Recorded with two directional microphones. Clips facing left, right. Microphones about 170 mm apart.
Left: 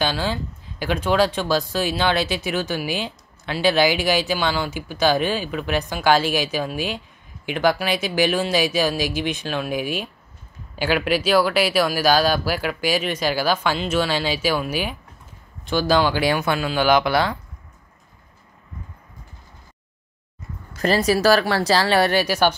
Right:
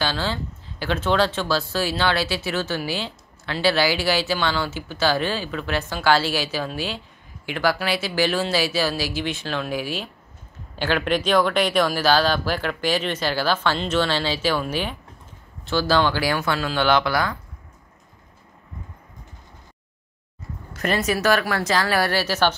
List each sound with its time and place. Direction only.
0.0 s speech: 15° left (ahead or behind)
17.1 s a woman's voice: 25° left (ahead or behind)
20.8 s a woman's voice: 35° left (ahead or behind); by 22.6 s 10° left (ahead or behind)